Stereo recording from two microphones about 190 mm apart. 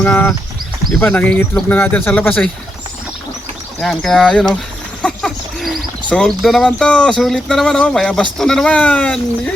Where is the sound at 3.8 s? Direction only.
Centre (ahead or behind).